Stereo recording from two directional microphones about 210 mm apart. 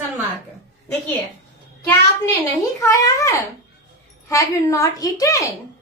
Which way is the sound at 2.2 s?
15° left (ahead or behind).